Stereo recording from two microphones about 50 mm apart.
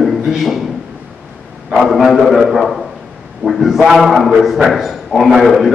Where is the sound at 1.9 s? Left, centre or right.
Centre.